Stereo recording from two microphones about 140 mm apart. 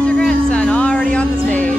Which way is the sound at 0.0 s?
5° left (ahead or behind).